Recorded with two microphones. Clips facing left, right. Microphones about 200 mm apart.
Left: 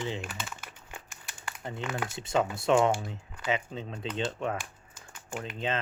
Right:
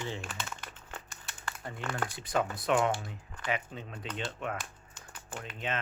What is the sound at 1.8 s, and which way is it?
Speech, 10° left (ahead or behind).